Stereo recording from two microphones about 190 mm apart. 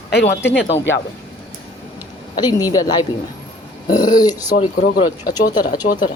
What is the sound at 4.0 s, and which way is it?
Speech, 20° left (ahead or behind).